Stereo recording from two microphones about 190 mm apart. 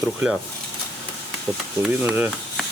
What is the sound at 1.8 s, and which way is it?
Speech, 10° right (ahead or behind).